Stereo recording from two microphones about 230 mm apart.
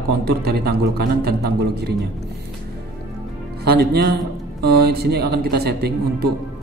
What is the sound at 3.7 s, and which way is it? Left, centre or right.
A man's voice, right.